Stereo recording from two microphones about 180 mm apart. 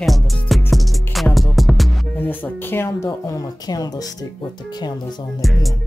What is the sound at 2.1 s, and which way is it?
Speech, 10° left (ahead or behind).